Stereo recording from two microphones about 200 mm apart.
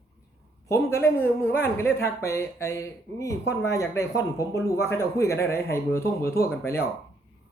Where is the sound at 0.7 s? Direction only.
15° left (ahead or behind).